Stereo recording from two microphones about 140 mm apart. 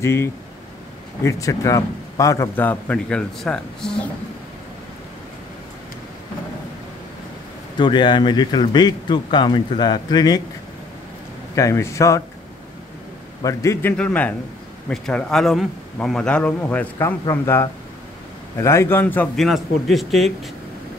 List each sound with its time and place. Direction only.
0.0 s a man's voice: 20° left (ahead or behind)
7.7 s speech: 35° left (ahead or behind)
11.5 s a man's voice: 20° left (ahead or behind)
13.4 s a man's voice: 25° left (ahead or behind)
13.9 s a man's voice: 10° left (ahead or behind)
19.3 s speech: centre (ahead or behind)